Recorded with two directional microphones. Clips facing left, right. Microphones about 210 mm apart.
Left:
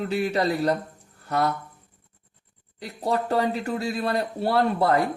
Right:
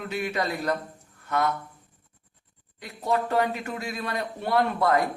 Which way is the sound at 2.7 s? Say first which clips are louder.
Left 1 dB; 35° left (ahead or behind).